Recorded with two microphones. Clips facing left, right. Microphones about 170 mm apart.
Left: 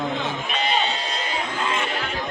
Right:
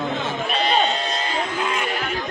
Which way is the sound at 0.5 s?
40° right (ahead or behind).